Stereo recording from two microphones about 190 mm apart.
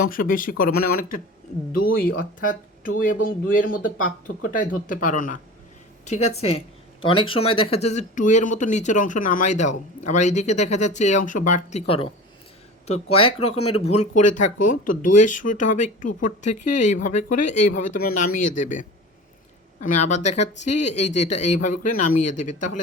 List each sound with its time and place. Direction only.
0.0 s speech: 45° left (ahead or behind)
19.8 s speech: 40° left (ahead or behind)